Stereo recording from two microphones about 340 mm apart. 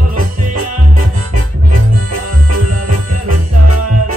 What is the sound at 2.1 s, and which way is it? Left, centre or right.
Music, right.